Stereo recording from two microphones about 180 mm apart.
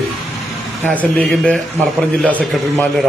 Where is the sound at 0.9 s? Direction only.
5° left (ahead or behind).